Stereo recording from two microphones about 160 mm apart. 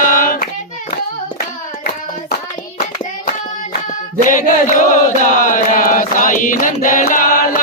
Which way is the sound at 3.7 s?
55° left (ahead or behind).